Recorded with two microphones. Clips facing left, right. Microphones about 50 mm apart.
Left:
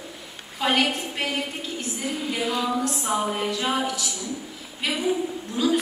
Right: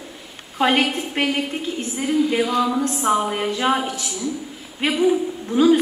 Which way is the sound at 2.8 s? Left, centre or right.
Right.